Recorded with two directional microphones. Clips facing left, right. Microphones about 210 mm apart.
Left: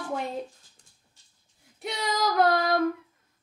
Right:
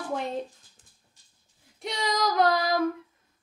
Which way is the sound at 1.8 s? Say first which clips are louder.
Even; centre (ahead or behind).